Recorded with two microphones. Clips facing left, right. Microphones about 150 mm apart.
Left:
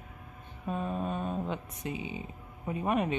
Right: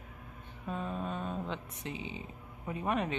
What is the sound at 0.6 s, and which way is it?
Speech, 15° left (ahead or behind).